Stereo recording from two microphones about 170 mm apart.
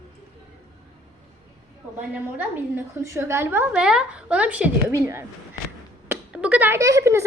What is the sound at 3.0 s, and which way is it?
A woman's voice, 15° right (ahead or behind).